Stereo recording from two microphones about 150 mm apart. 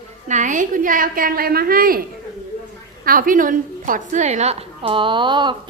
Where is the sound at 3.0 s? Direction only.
70° right (ahead or behind); by 5.5 s 30° right (ahead or behind).